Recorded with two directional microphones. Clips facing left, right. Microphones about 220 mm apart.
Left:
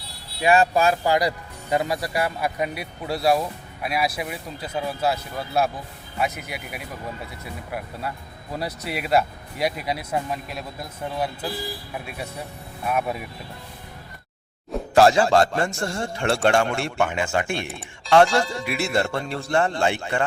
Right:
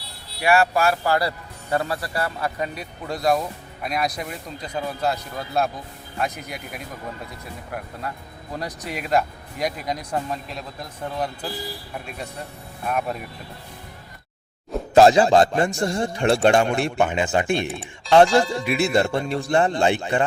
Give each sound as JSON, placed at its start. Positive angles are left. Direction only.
{"t": 0.4, "sound": "speech", "side_deg": 20}
{"t": 8.5, "sound": "speech", "side_deg": 5}
{"t": 14.9, "sound": "a man's voice", "side_deg": -20}
{"t": 18.3, "sound": "speech", "side_deg": 0}
{"t": 18.6, "sound": "speech", "side_deg": -20}